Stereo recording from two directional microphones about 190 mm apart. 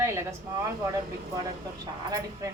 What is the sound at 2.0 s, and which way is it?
Speech, 20° right (ahead or behind).